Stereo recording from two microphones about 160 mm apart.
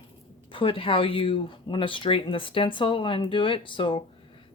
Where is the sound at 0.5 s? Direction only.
35° left (ahead or behind).